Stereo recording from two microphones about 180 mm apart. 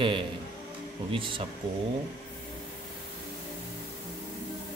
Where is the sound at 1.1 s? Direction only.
30° right (ahead or behind).